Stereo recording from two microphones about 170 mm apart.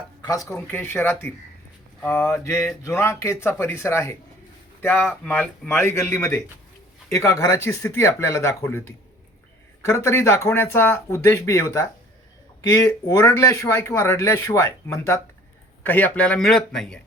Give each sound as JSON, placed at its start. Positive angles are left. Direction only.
{"t": 0.2, "sound": "a man's voice", "side_deg": 20}
{"t": 9.8, "sound": "a man's voice", "side_deg": 15}